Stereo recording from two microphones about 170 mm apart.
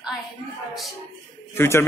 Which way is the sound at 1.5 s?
15° left (ahead or behind).